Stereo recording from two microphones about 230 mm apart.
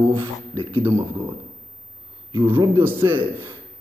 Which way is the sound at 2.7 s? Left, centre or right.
Centre.